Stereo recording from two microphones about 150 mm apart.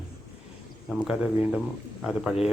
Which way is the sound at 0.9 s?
5° right (ahead or behind).